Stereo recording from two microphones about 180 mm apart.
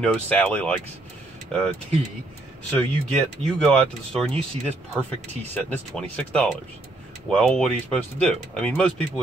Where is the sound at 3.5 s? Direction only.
5° left (ahead or behind).